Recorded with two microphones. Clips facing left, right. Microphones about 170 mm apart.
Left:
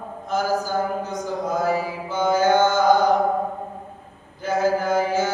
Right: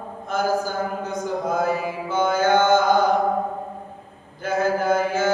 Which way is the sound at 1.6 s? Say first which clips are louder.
Even; 55° right (ahead or behind).